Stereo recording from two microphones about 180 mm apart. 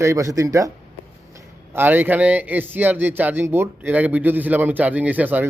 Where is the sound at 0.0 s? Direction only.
15° right (ahead or behind).